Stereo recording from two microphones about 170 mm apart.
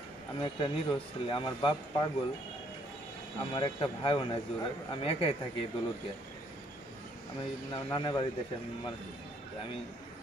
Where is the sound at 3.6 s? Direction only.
30° left (ahead or behind).